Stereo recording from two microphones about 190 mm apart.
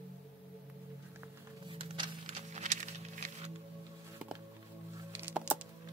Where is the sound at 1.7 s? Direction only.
30° right (ahead or behind).